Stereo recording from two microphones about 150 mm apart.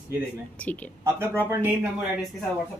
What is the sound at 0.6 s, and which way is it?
Speech, 10° left (ahead or behind).